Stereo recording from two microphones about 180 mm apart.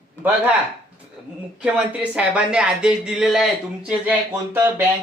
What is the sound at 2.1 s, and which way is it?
Speech, 5° right (ahead or behind).